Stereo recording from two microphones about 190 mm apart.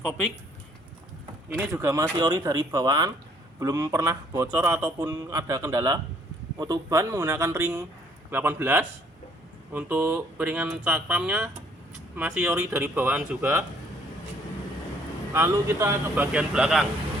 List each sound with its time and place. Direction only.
1.5 s a man's voice: 10° right (ahead or behind)
15.3 s a man's voice: 15° right (ahead or behind)